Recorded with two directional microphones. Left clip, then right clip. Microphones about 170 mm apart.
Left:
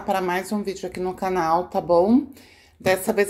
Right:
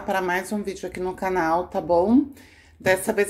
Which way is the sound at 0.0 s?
10° left (ahead or behind).